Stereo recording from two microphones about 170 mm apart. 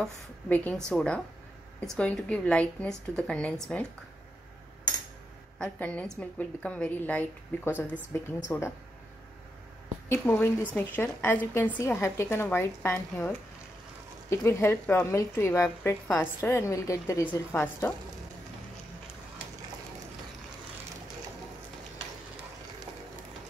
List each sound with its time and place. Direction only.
0.0 s a woman's voice: 10° left (ahead or behind)
5.6 s a woman's voice: 10° left (ahead or behind)
10.0 s a woman's voice: 15° left (ahead or behind)